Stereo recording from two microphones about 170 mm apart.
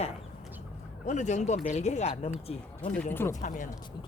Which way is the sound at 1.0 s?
45° left (ahead or behind).